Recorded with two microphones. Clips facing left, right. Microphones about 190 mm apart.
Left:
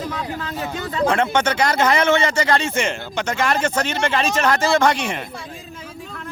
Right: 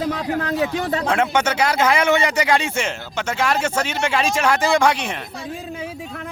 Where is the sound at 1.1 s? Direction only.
5° right (ahead or behind).